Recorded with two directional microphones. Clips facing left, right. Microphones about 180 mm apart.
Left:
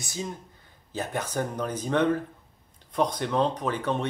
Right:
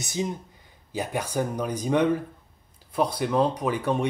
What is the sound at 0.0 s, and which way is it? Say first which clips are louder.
Speech: right 5 dB; 20° right (ahead or behind).